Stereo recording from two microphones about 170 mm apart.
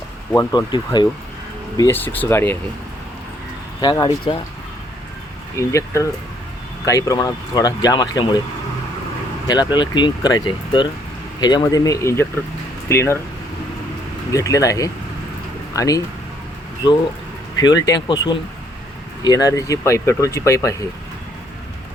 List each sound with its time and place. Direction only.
0.3 s speech: 25° left (ahead or behind)
3.8 s speech: 25° left (ahead or behind)
5.5 s speech: 15° left (ahead or behind)
9.5 s speech: 25° left (ahead or behind)
14.3 s speech: 20° left (ahead or behind)